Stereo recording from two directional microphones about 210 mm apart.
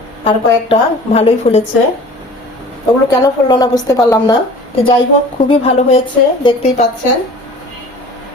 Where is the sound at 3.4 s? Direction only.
20° left (ahead or behind).